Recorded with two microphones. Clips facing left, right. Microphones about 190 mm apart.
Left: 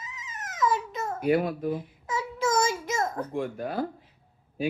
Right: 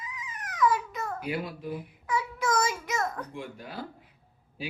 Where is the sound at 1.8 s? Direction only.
25° left (ahead or behind).